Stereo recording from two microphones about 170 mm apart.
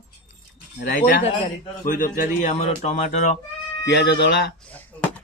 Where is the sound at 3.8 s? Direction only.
85° left.